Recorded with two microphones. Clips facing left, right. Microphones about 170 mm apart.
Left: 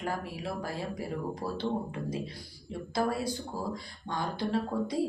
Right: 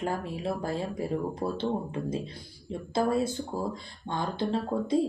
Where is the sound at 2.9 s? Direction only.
25° right (ahead or behind).